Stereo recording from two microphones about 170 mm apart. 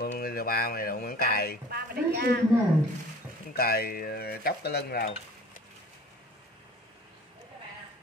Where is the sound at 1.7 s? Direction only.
65° right (ahead or behind).